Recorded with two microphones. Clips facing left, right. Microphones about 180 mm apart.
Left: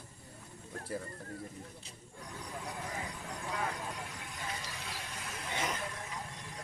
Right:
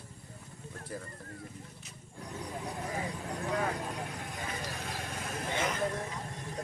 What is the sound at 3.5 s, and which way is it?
Vehicle, 50° right (ahead or behind).